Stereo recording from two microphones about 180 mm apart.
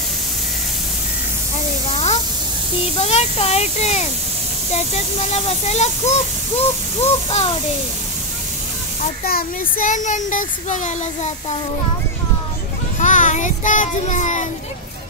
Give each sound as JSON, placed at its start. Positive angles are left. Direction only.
{"t": 2.8, "sound": "speech", "side_deg": 35}
{"t": 9.2, "sound": "speech", "side_deg": 55}
{"t": 13.0, "sound": "child singing", "side_deg": 45}